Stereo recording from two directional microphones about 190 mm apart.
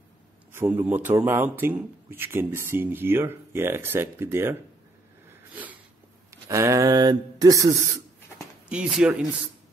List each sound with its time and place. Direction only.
0.5 s speech: 10° right (ahead or behind)
5.3 s a sound: 10° right (ahead or behind)
6.5 s speech: 15° right (ahead or behind)
8.6 s speech: 5° right (ahead or behind)